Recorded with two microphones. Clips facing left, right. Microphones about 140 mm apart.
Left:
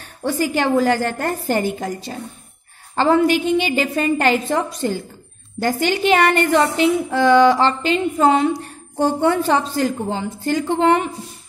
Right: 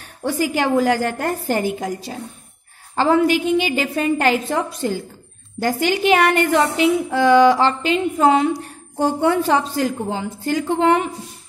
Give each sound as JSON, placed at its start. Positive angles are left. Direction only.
{"t": 0.2, "sound": "a woman's voice", "side_deg": -10}